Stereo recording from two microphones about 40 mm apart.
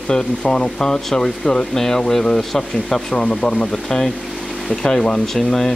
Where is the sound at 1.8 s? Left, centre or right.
Centre.